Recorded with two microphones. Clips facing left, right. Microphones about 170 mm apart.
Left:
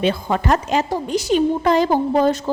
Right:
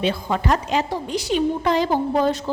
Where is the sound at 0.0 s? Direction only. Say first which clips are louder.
Left 3 dB; 50° left (ahead or behind).